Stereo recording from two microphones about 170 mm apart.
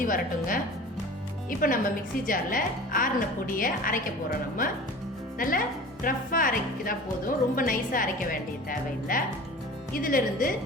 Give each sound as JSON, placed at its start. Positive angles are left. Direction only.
{"t": 0.0, "sound": "a woman's voice", "side_deg": 55}
{"t": 5.4, "sound": "a woman's voice", "side_deg": 55}